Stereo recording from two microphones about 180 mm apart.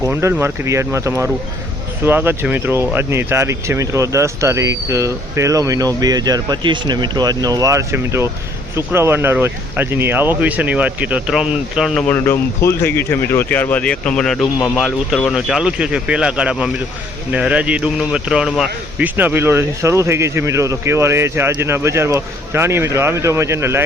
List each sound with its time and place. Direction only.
0.0 s a man's voice: 15° right (ahead or behind)
12.0 s a man's voice: 10° left (ahead or behind); by 23.8 s 15° right (ahead or behind)